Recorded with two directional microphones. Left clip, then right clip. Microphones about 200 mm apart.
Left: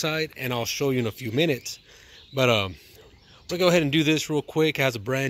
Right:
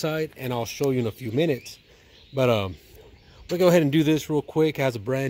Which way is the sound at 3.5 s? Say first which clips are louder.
Right 2 dB; 20° right (ahead or behind).